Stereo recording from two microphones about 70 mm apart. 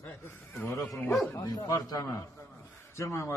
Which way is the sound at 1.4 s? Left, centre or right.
Left.